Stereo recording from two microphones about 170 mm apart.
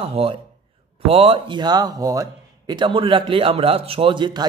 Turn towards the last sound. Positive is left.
turn(degrees=-30)  # may be behind; listen again after turning